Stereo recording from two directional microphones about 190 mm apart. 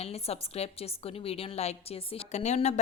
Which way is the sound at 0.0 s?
35° left (ahead or behind).